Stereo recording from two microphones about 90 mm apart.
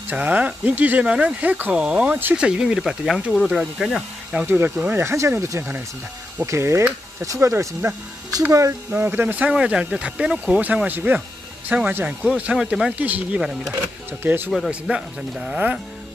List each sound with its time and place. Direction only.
0.1 s speech: 15° right (ahead or behind)
4.5 s speech: 25° right (ahead or behind)
8.9 s speech: 20° right (ahead or behind); by 12.9 s 5° right (ahead or behind)
12.9 s speech: 15° right (ahead or behind)
14.7 s speech: 10° right (ahead or behind)